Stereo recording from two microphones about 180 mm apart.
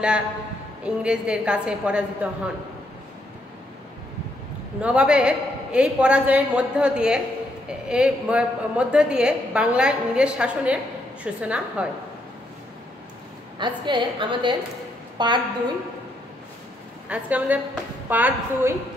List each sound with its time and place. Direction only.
0.8 s a woman's voice: 5° right (ahead or behind)
4.8 s a woman's voice: 5° right (ahead or behind)
13.6 s a woman's voice: 25° right (ahead or behind)
17.1 s a woman's voice: 10° right (ahead or behind)